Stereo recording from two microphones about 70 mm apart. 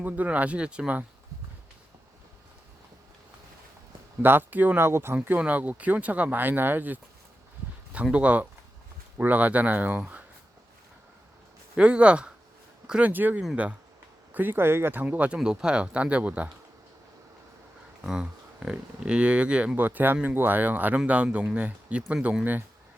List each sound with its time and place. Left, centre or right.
0.0 s speech: right
4.2 s speech: right
4.8 s speech: right
5.1 s speech: right
8.1 s speech: centre
11.8 s speech: centre; by 15.0 s right
15.0 s speech: centre
18.0 s speech: centre